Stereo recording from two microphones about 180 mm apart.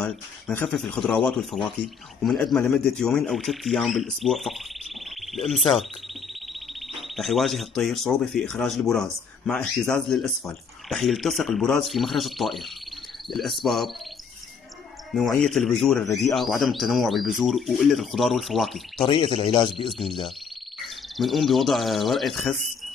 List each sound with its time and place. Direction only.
0.0 s speech: 5° left (ahead or behind)
6.9 s speech: centre (ahead or behind)
15.1 s speech: centre (ahead or behind)
19.0 s speech: 30° left (ahead or behind)
19.8 s speech: centre (ahead or behind)